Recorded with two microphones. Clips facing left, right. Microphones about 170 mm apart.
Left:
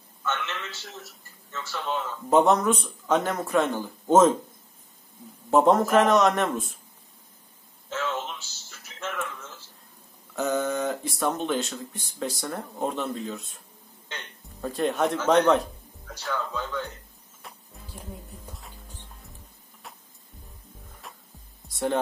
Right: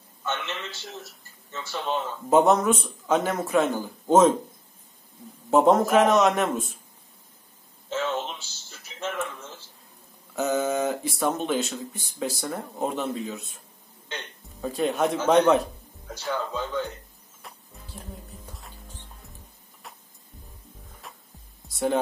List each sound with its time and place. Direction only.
0.2 s a sound: 15° right (ahead or behind)
1.5 s speech: 20° right (ahead or behind)
2.2 s speech: 5° right (ahead or behind)
5.5 s speech: centre (ahead or behind)
7.9 s a sound: 25° right (ahead or behind)
10.3 s speech: 5° right (ahead or behind)
14.6 s speech: 5° right (ahead or behind)
16.2 s speech: 20° right (ahead or behind)
17.4 s music: centre (ahead or behind)
21.0 s music: centre (ahead or behind)
21.6 s heart sounds: centre (ahead or behind)